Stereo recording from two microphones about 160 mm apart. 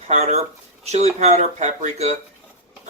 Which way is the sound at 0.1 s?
45° right (ahead or behind).